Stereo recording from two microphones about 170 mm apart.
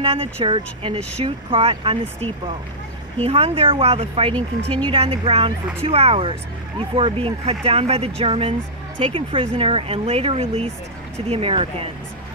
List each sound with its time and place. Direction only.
0.0 s speech: 35° right (ahead or behind)
3.3 s speech: 35° right (ahead or behind)